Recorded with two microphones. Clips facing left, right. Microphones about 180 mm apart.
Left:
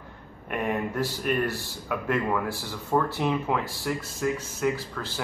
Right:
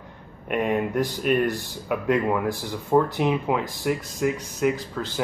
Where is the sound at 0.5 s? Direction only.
20° right (ahead or behind).